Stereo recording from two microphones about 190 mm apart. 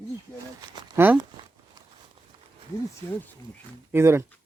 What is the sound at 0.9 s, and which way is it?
Speech, 10° right (ahead or behind).